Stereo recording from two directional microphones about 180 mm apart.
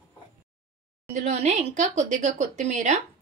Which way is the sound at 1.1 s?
40° right (ahead or behind).